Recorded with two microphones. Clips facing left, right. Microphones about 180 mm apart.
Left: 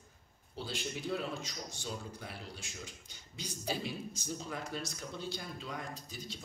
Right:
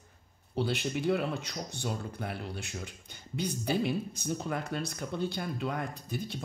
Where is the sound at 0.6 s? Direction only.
65° right (ahead or behind).